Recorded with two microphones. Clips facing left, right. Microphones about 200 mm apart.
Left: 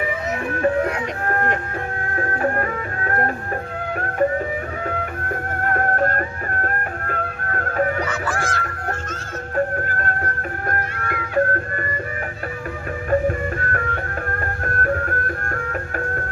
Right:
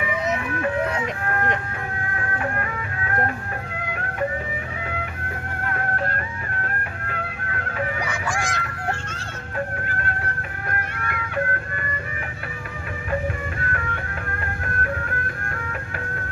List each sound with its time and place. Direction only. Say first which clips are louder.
0.0 s music: left 1 dB; 40° left (ahead or behind)
1.2 s speech: left 6 dB; 40° left (ahead or behind)
2.1 s music: left 7 dB; 40° left (ahead or behind)
8.0 s goose: left 3 dB; 10° right (ahead or behind)
9.7 s music: left 4 dB; 45° left (ahead or behind)
13.1 s music: left 7 dB; 45° left (ahead or behind)